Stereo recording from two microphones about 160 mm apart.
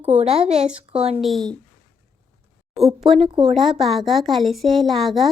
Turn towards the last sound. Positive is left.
turn(degrees=0)  # may be behind; listen again after turning